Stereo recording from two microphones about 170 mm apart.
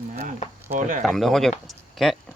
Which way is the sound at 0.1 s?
50° right (ahead or behind).